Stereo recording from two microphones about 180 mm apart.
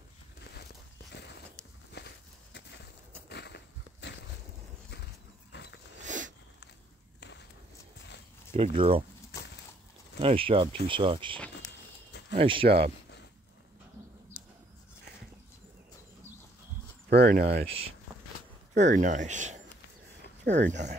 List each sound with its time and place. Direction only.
2.0 s a sound: 65° left (ahead or behind)
3.3 s a sound: 70° left (ahead or behind)
6.0 s a sound: 45° right (ahead or behind)
7.2 s walk: 75° left (ahead or behind)
8.5 s speech: 30° right (ahead or behind)
10.2 s speech: 30° right (ahead or behind)
12.4 s speech: 30° right (ahead or behind)
17.1 s speech: 55° right (ahead or behind)
17.6 s speech: 30° right (ahead or behind)